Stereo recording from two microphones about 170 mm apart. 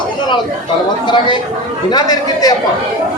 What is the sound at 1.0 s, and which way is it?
A man's voice, 25° left (ahead or behind).